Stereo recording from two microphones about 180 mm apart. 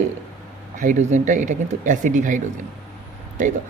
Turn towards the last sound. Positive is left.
turn(degrees=-45)  # may be behind; listen again after turning